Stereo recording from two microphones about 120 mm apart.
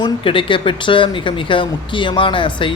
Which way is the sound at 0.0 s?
45° left (ahead or behind).